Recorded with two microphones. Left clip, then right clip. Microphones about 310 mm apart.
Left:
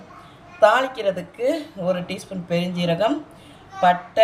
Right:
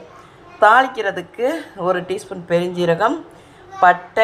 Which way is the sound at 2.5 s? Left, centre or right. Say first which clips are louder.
Right 6 dB; right.